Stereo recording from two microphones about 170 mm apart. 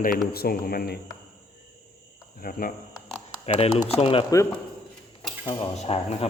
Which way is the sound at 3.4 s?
35° left (ahead or behind).